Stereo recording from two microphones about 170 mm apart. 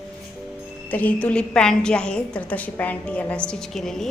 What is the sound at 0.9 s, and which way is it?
A woman's voice, 10° left (ahead or behind).